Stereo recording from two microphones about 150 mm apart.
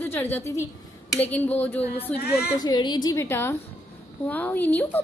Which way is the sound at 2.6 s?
30° left (ahead or behind).